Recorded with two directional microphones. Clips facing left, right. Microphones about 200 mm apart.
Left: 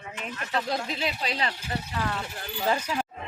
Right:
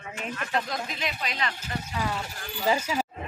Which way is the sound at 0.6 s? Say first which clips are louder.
Left 3 dB; 30° left (ahead or behind).